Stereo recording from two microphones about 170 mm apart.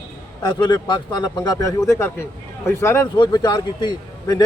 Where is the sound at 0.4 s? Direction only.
25° left (ahead or behind).